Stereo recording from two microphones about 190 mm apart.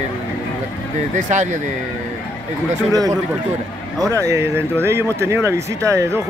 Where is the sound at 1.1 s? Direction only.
40° right (ahead or behind).